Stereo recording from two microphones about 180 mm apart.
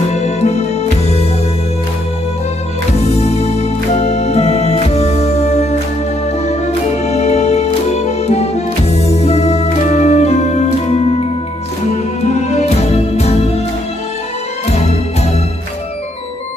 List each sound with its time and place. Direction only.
0.1 s music: 40° left (ahead or behind)
3.2 s music: 35° left (ahead or behind)
7.1 s music: 35° left (ahead or behind)